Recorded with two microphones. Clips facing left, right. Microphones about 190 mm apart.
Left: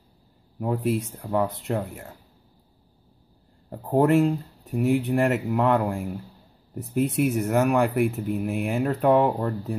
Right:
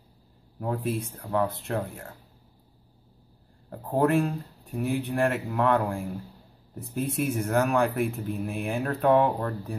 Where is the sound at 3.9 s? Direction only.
20° left (ahead or behind).